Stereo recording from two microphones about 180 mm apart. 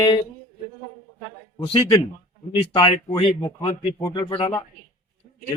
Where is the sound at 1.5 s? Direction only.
30° left (ahead or behind).